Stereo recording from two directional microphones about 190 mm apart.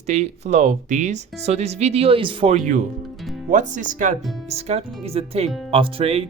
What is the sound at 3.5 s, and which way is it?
Speech, 40° right (ahead or behind).